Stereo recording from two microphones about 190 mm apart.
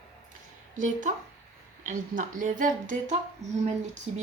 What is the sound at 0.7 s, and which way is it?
Speech, 45° right (ahead or behind).